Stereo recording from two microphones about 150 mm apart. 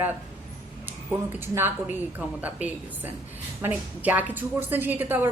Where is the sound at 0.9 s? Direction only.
15° right (ahead or behind).